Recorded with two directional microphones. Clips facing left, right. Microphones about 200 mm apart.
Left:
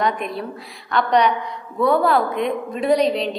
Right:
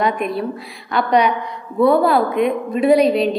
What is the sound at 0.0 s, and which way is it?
A woman's voice, 10° right (ahead or behind).